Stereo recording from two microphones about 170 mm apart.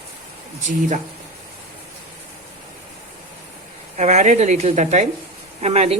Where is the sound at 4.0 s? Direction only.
45° right (ahead or behind).